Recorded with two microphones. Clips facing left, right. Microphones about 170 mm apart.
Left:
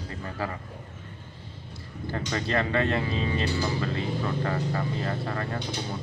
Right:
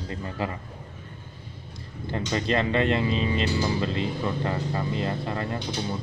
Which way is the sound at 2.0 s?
20° right (ahead or behind).